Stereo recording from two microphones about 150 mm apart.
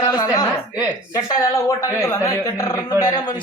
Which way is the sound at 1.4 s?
20° left (ahead or behind).